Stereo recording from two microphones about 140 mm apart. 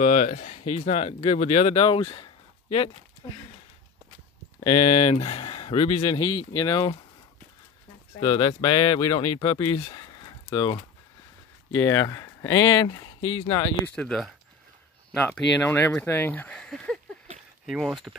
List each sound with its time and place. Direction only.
0.0 s speech: 60° left (ahead or behind); by 2.9 s 35° left (ahead or behind)
4.8 s speech: 55° left (ahead or behind); by 7.0 s 30° left (ahead or behind)
8.2 s speech: 40° left (ahead or behind)
11.7 s speech: 25° left (ahead or behind)
12.7 s speech: 35° left (ahead or behind)
13.8 s speech: 5° left (ahead or behind)